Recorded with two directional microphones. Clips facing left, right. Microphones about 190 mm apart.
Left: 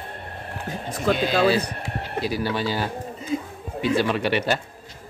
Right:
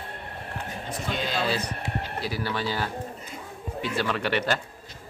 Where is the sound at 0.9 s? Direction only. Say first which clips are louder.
Left 9 dB; 90° left.